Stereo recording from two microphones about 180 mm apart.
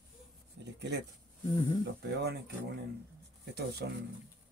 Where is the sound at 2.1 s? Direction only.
65° right (ahead or behind).